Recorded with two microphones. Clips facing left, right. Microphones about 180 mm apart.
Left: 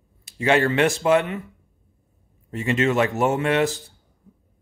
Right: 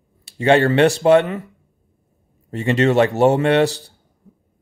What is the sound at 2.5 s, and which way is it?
A man's voice, 35° right (ahead or behind).